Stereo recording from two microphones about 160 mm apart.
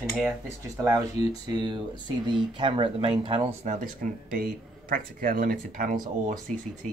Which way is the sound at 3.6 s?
55° right (ahead or behind).